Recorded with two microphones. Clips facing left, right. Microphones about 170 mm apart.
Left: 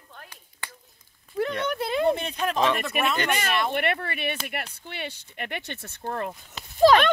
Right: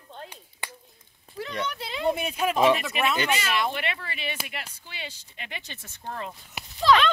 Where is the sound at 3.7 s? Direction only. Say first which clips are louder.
Left 5 dB; 55° left (ahead or behind).